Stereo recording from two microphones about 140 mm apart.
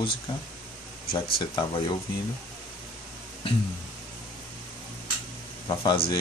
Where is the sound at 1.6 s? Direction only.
35° left (ahead or behind).